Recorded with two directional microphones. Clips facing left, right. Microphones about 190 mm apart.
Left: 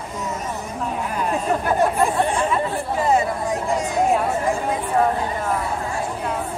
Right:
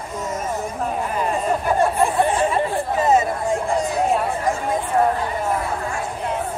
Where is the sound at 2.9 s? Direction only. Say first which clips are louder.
Right 1 dB; 20° right (ahead or behind).